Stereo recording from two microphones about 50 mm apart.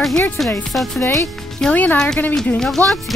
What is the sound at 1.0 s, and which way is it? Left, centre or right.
Speech, left.